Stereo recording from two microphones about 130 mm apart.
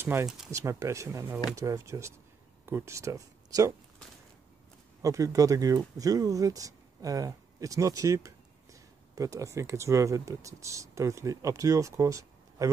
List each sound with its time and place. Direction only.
0.0 s speech: 20° right (ahead or behind)
5.0 s speech: 25° right (ahead or behind)